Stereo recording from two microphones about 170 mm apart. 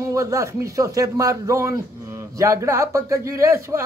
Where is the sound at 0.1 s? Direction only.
20° right (ahead or behind).